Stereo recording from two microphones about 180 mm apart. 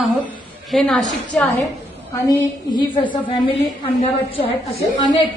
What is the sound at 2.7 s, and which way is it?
A woman's voice, 25° left (ahead or behind).